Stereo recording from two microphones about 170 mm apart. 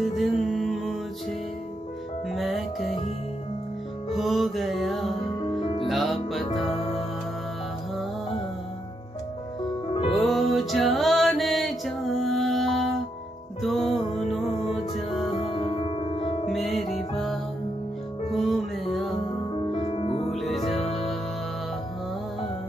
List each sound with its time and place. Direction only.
0.0 s music: centre (ahead or behind)
2.3 s music: centre (ahead or behind)
4.1 s music: centre (ahead or behind)
5.6 s music: 30° left (ahead or behind)
5.9 s music: centre (ahead or behind)
9.9 s music: 35° left (ahead or behind)
10.2 s mantra: centre (ahead or behind)
13.6 s music: centre (ahead or behind)
13.8 s music: 35° left (ahead or behind)
16.4 s music: centre (ahead or behind)
19.5 s music: 30° left (ahead or behind)
20.3 s music: centre (ahead or behind)